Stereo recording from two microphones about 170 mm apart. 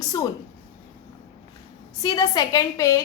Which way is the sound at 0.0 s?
20° left (ahead or behind).